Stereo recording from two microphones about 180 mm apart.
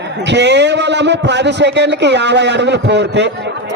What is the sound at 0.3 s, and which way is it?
A man's voice, 75° right (ahead or behind).